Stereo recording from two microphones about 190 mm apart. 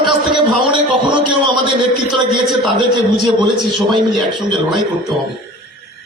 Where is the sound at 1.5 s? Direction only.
25° right (ahead or behind).